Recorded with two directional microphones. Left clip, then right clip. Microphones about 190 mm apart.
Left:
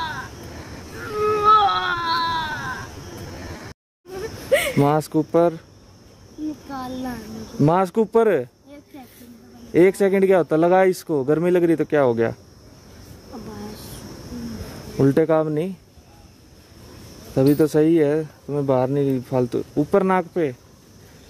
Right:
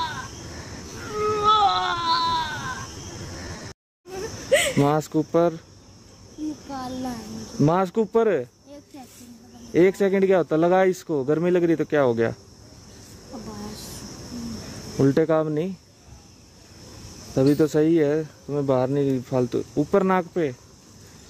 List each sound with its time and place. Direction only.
1.0 s baby cry: 5° left (ahead or behind)
4.1 s a sound: 45° left (ahead or behind)
4.7 s speech: 5° left (ahead or behind)
6.7 s a sound: 5° left (ahead or behind)
7.6 s speech: 5° left (ahead or behind)
9.7 s speech: 5° left (ahead or behind)
15.0 s speech: 5° left (ahead or behind)
17.4 s speech: 5° left (ahead or behind)